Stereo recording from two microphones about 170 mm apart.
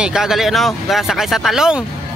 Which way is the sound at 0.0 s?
Centre (ahead or behind).